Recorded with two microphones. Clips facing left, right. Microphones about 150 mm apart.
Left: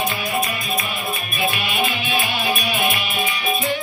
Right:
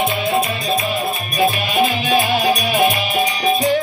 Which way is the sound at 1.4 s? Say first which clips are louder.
Right 7 dB; 35° right (ahead or behind).